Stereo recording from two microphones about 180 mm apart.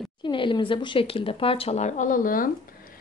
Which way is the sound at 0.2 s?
25° left (ahead or behind).